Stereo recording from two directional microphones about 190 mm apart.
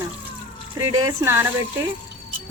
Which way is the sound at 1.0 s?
15° right (ahead or behind).